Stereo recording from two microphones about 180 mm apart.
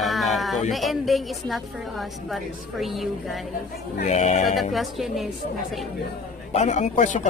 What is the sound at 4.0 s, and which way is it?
Speech, 40° left (ahead or behind).